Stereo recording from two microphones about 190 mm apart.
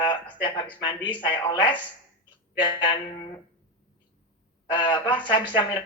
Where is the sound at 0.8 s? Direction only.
20° left (ahead or behind).